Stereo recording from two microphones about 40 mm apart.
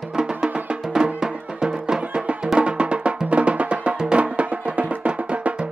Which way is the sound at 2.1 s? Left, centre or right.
Right.